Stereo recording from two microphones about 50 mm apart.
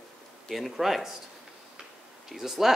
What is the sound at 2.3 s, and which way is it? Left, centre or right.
Speech, centre.